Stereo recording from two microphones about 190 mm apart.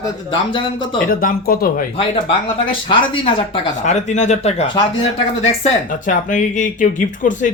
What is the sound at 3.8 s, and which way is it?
Speech, 40° left (ahead or behind).